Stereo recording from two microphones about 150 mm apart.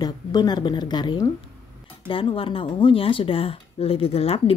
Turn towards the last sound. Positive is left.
turn(degrees=40)  # may be behind; listen again after turning